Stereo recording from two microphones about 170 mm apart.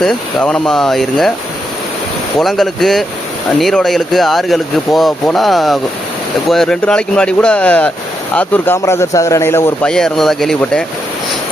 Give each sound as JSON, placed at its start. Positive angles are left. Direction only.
{"t": 0.0, "sound": "speech", "side_deg": 5}
{"t": 2.4, "sound": "a man's voice", "side_deg": 0}